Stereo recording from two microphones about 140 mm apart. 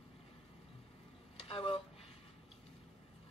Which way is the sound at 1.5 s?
40° left (ahead or behind).